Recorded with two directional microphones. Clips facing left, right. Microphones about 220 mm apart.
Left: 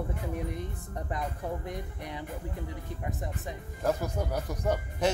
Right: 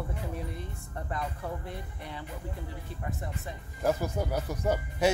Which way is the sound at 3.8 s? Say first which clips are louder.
Right 1 dB; 5° right (ahead or behind).